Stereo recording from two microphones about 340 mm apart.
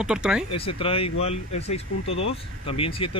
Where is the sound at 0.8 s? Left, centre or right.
Centre.